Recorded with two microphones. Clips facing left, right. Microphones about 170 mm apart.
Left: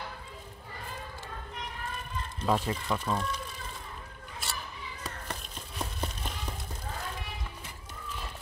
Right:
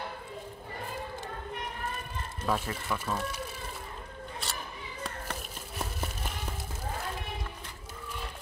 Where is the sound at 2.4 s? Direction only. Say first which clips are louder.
Left 3 dB; 20° left (ahead or behind).